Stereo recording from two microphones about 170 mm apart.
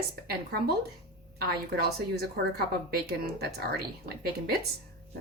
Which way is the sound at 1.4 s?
70° right (ahead or behind).